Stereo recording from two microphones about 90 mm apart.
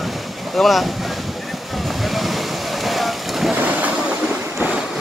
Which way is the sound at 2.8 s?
Centre (ahead or behind).